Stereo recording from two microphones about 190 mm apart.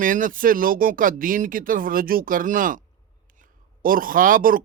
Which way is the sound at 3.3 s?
45° right (ahead or behind).